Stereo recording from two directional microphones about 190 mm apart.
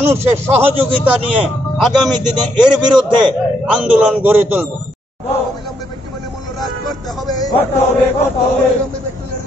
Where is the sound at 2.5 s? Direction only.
25° right (ahead or behind).